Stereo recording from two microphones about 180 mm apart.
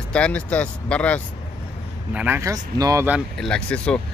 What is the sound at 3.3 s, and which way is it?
Speech, 5° left (ahead or behind).